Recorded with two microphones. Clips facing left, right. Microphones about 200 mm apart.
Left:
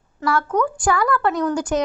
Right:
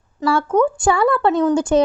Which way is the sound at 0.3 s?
25° right (ahead or behind).